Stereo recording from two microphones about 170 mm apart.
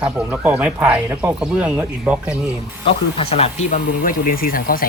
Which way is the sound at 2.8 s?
35° left (ahead or behind).